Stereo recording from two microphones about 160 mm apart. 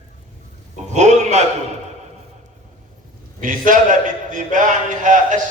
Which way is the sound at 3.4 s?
55° right (ahead or behind).